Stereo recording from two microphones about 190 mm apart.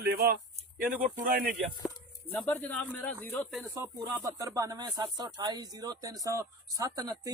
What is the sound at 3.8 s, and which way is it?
Speech, 15° right (ahead or behind).